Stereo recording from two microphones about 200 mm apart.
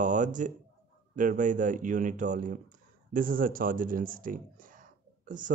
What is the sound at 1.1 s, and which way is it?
Speech, 40° right (ahead or behind).